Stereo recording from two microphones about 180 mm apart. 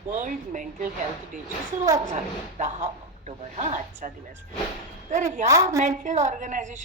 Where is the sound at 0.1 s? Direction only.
45° right (ahead or behind).